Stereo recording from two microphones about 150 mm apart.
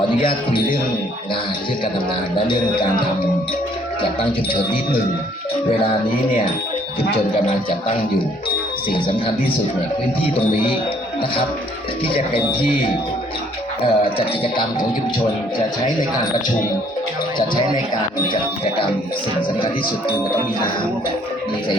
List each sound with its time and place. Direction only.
0.1 s music: 35° left (ahead or behind)
2.5 s music: 30° left (ahead or behind)
4.2 s music: 35° left (ahead or behind)
8.9 s music: 35° left (ahead or behind)
12.0 s music: 35° left (ahead or behind)
19.5 s music: 35° left (ahead or behind)